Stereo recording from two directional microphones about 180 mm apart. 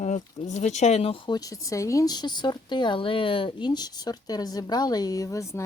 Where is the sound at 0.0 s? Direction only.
40° left (ahead or behind).